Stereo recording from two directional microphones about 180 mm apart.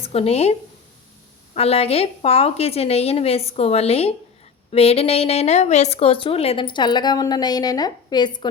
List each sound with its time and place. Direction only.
0.0 s speech: 35° left (ahead or behind)
1.5 s a woman's voice: 35° left (ahead or behind)